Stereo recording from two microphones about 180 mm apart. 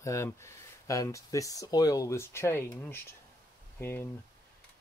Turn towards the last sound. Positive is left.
turn(degrees=15)  # may be behind; listen again after turning